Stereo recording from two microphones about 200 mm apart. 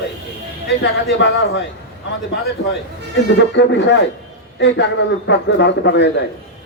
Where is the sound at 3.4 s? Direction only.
60° left (ahead or behind).